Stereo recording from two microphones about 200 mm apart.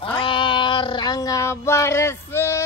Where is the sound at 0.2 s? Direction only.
25° left (ahead or behind).